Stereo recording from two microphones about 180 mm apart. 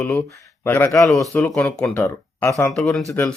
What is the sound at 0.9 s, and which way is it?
A man's voice, centre (ahead or behind).